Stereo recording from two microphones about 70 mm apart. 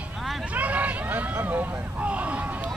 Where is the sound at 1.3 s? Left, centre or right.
Right.